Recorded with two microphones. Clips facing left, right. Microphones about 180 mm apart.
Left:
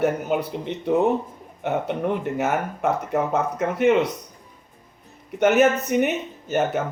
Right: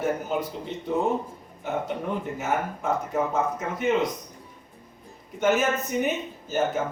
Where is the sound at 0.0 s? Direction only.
65° left (ahead or behind).